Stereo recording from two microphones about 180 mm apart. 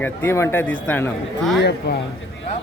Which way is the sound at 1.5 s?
70° left (ahead or behind).